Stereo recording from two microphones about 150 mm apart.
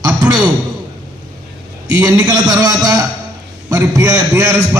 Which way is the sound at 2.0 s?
25° right (ahead or behind).